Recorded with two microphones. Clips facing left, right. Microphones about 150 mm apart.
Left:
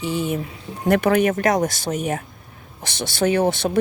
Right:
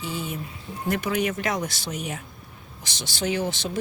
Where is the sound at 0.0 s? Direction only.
65° left (ahead or behind).